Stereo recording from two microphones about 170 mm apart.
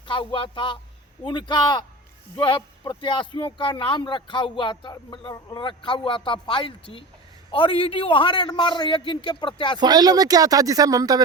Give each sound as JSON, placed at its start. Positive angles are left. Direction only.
{"t": 0.0, "sound": "speech", "side_deg": 30}
{"t": 9.7, "sound": "speech", "side_deg": -25}